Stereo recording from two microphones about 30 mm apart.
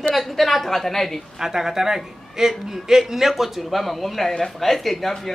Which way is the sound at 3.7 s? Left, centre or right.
Centre.